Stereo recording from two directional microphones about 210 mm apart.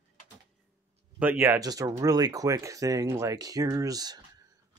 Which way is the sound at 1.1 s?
10° right (ahead or behind).